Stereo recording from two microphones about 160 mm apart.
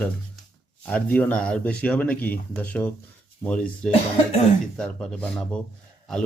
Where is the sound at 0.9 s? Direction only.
10° left (ahead or behind).